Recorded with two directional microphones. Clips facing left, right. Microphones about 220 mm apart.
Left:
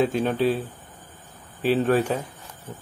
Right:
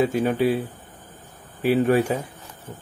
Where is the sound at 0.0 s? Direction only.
10° right (ahead or behind).